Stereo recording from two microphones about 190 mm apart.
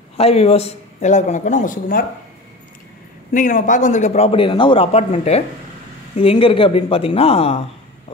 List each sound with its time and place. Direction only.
0.2 s a man's voice: 30° left (ahead or behind)
3.3 s a man's voice: 40° left (ahead or behind)